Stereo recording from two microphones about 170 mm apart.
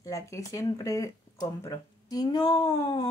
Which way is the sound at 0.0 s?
20° left (ahead or behind).